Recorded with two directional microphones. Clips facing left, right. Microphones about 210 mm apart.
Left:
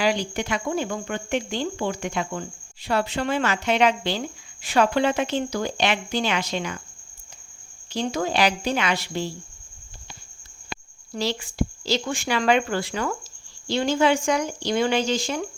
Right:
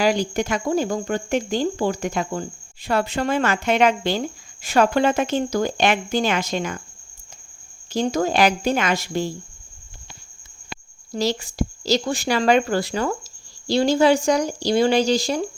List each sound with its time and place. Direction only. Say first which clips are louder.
0.0 s speech: right 4 dB; 45° right (ahead or behind)
7.9 s speech: right 4 dB; 45° right (ahead or behind)
11.1 s speech: right 4 dB; 40° right (ahead or behind)